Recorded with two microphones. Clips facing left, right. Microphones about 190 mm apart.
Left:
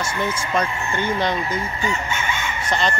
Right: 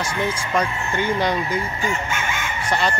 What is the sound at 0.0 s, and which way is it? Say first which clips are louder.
Speech: even; 10° right (ahead or behind).